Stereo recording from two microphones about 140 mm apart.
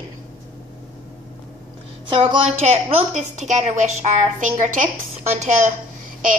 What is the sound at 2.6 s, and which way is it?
A woman's voice, 45° right (ahead or behind).